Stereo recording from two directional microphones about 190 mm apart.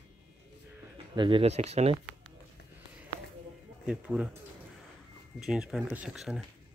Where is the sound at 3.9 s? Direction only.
5° right (ahead or behind).